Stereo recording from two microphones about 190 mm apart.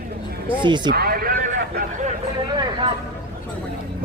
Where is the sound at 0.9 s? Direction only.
50° right (ahead or behind).